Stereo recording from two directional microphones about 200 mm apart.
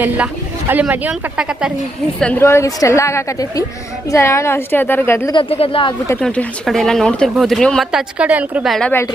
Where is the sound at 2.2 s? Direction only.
10° left (ahead or behind).